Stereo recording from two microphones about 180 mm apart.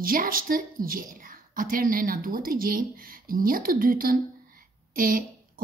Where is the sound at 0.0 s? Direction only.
50° right (ahead or behind).